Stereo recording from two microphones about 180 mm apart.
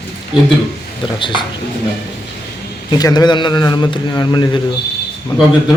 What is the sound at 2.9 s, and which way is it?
A man's voice, 20° left (ahead or behind).